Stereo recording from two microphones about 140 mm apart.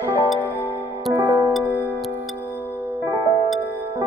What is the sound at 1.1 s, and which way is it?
Music, 25° right (ahead or behind).